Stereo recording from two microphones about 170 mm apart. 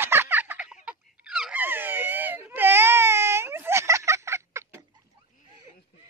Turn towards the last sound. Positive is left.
turn(degrees=-15)  # may be behind; listen again after turning